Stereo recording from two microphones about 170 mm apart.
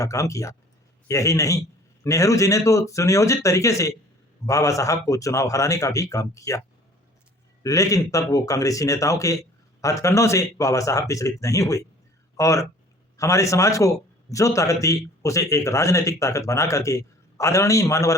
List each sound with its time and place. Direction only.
0.0 s a man's voice: 20° left (ahead or behind)
7.6 s a man's voice: 20° left (ahead or behind)